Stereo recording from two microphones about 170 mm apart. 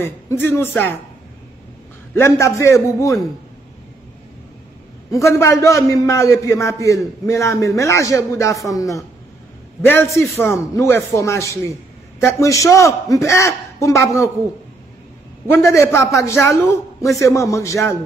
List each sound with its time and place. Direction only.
0.0 s a man's voice: 15° left (ahead or behind)
2.1 s a man's voice: 15° left (ahead or behind)
5.1 s a man's voice: 15° left (ahead or behind)
15.5 s a man's voice: 15° left (ahead or behind)